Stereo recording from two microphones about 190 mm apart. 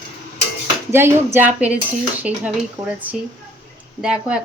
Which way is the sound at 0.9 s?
10° right (ahead or behind).